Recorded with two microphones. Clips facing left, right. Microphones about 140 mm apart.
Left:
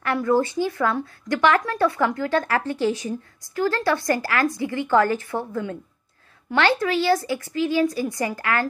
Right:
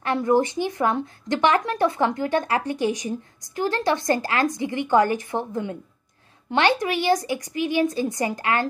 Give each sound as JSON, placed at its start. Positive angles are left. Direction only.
{"t": 0.0, "sound": "speech", "side_deg": -20}